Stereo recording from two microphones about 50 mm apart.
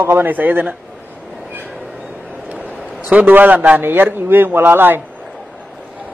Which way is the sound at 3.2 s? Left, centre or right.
Right.